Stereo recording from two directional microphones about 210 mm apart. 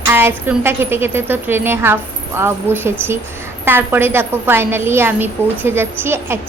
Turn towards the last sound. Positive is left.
turn(degrees=-10)  # may be behind; listen again after turning